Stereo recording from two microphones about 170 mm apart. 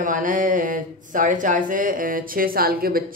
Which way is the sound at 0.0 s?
50° right (ahead or behind).